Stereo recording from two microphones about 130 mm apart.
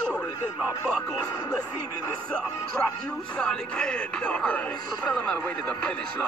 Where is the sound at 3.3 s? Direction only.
10° left (ahead or behind).